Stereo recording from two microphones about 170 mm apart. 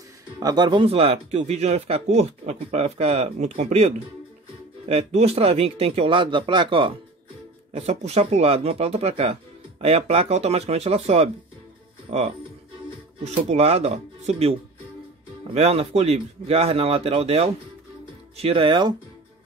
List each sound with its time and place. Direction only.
0.4 s speech: 25° right (ahead or behind)
7.7 s speech: 40° right (ahead or behind)